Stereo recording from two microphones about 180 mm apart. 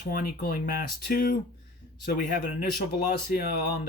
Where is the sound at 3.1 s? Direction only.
60° left (ahead or behind).